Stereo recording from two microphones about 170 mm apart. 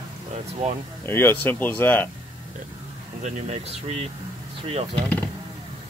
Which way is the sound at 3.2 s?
40° right (ahead or behind).